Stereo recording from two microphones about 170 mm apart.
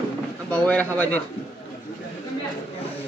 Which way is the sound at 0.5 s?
5° left (ahead or behind).